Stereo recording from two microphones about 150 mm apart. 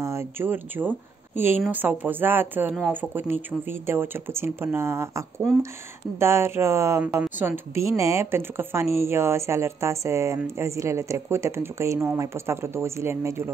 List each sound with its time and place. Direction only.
0.0 s a woman's voice: 20° right (ahead or behind)